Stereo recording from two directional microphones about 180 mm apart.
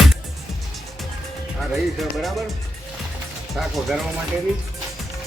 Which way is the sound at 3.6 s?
Centre (ahead or behind).